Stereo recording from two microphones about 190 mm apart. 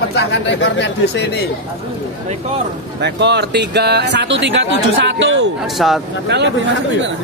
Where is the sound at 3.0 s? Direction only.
65° right (ahead or behind).